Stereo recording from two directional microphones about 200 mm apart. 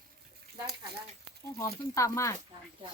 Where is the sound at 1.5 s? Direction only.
15° left (ahead or behind).